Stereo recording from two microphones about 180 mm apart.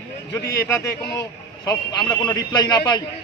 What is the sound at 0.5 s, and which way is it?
A man's voice, 15° left (ahead or behind).